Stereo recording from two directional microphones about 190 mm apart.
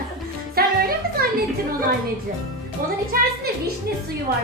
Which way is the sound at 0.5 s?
50° right (ahead or behind).